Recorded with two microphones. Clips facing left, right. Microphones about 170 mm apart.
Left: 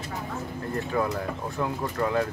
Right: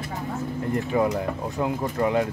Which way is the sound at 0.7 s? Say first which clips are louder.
Right 4 dB; 15° right (ahead or behind).